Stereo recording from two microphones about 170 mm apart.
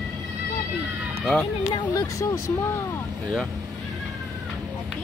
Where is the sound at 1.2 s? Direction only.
5° left (ahead or behind).